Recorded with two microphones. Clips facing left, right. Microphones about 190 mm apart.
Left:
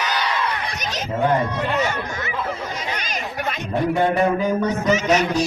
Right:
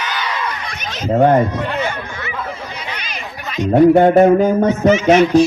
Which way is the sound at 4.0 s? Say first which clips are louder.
Right 9 dB; 45° right (ahead or behind).